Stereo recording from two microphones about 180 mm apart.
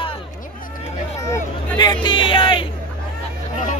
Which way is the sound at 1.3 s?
25° left (ahead or behind).